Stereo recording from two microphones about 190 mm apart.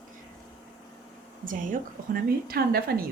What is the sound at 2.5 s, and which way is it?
Speech, 55° right (ahead or behind).